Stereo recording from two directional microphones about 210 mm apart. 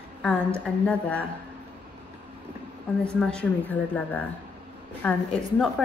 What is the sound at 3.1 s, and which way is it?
Speech, 5° left (ahead or behind).